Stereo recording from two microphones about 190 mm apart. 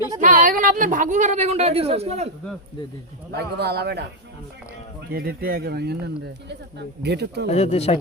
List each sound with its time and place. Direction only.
0.2 s a woman's voice: 45° right (ahead or behind)
3.3 s speech: 60° right (ahead or behind)
5.1 s speech: 55° right (ahead or behind)
7.4 s speech: 35° left (ahead or behind)